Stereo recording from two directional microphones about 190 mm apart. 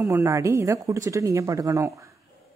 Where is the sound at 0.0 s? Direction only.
15° right (ahead or behind).